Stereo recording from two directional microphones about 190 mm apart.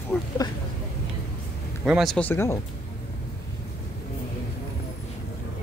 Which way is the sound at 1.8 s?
Centre (ahead or behind).